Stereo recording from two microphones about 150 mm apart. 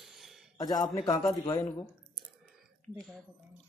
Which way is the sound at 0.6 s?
25° left (ahead or behind).